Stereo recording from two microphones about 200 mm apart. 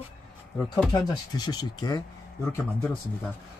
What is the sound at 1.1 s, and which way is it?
Speech, 20° left (ahead or behind).